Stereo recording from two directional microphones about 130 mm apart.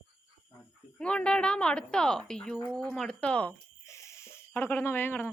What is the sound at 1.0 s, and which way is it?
A woman's voice, 10° left (ahead or behind).